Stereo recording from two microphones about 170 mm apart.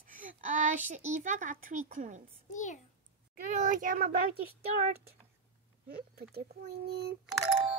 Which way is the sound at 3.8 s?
55° right (ahead or behind).